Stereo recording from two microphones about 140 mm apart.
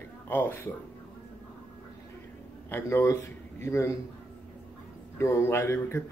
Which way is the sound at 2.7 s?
20° left (ahead or behind).